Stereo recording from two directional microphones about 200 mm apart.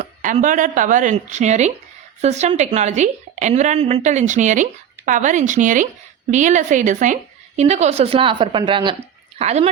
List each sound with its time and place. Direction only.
0.0 s a woman's voice: 40° right (ahead or behind)